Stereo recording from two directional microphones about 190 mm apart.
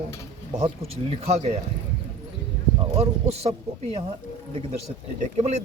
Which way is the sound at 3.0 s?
35° right (ahead or behind).